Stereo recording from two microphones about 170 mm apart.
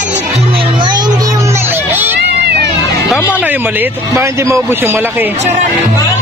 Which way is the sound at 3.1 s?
15° left (ahead or behind).